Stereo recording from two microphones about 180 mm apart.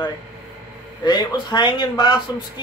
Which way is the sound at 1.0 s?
25° left (ahead or behind).